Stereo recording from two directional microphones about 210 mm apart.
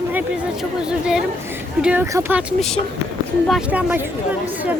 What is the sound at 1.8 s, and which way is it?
Speech, 5° right (ahead or behind).